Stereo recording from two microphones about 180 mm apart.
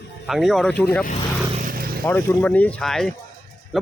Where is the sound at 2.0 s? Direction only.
10° left (ahead or behind).